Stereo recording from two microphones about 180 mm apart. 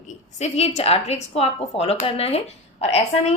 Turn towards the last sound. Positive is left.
turn(degrees=35)  # may be behind; listen again after turning